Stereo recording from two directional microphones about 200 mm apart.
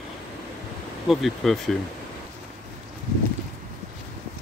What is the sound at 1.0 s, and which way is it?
Speech, centre (ahead or behind).